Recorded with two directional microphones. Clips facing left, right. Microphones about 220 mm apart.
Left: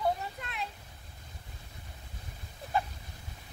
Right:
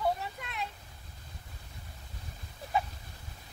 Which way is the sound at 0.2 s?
Centre (ahead or behind).